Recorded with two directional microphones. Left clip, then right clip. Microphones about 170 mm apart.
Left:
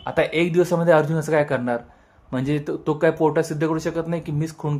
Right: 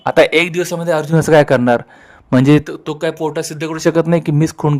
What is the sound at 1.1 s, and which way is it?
Speech, 85° right.